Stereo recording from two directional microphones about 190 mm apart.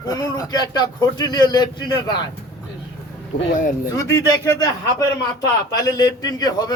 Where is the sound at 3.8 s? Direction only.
15° left (ahead or behind).